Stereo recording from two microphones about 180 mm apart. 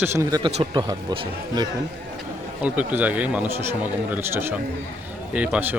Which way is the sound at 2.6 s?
10° right (ahead or behind).